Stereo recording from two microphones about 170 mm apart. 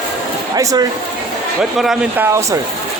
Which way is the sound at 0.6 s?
20° right (ahead or behind).